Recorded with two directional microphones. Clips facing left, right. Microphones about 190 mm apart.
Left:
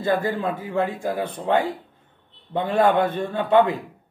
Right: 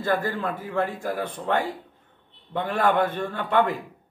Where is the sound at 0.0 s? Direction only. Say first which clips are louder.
Left 3 dB; 15° left (ahead or behind).